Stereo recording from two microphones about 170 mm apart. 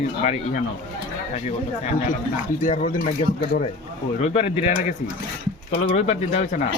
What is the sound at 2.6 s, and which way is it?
Speech, 50° left (ahead or behind).